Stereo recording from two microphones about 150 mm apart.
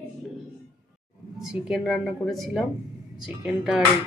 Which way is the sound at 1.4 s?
Centre (ahead or behind).